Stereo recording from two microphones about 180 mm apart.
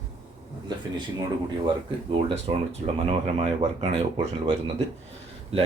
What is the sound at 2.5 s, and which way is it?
Speech, 35° right (ahead or behind).